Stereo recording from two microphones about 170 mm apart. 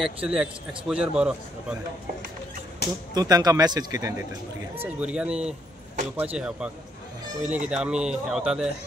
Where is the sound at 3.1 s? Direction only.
20° right (ahead or behind).